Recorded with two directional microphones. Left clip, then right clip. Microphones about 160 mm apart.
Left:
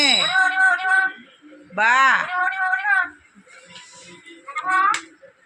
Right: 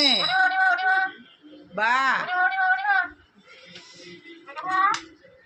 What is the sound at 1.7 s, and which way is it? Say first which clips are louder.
Speech: left 6 dB; 5° left (ahead or behind).